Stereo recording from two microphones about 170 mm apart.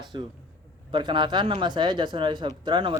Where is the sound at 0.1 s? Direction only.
25° right (ahead or behind).